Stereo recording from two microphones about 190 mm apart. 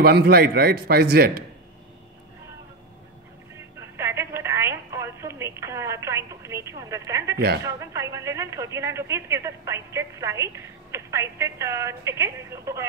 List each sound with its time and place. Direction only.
0.0 s speech: 55° right (ahead or behind)
3.9 s telephone: 15° right (ahead or behind)
7.6 s speech: 15° right (ahead or behind)